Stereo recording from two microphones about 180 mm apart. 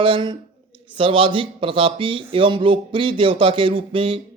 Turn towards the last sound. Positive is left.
turn(degrees=-30)  # may be behind; listen again after turning